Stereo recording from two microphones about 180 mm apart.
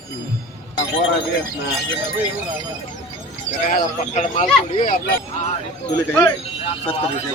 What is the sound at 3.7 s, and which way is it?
Speech, 45° left (ahead or behind).